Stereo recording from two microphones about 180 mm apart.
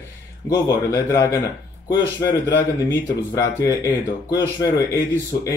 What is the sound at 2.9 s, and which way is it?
Speech, 15° left (ahead or behind).